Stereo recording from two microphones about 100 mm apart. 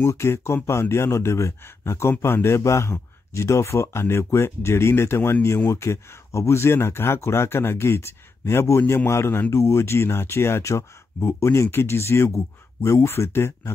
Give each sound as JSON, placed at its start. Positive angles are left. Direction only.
{"t": 0.0, "sound": "speech", "side_deg": 30}